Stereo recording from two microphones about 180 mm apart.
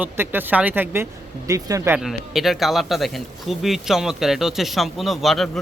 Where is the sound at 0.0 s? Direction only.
10° right (ahead or behind).